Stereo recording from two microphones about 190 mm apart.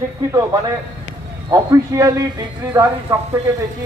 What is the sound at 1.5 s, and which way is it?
A man's voice, 15° right (ahead or behind).